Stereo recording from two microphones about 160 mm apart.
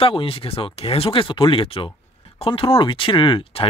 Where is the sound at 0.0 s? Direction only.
35° left (ahead or behind).